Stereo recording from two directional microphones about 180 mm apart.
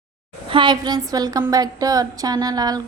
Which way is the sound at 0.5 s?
25° right (ahead or behind).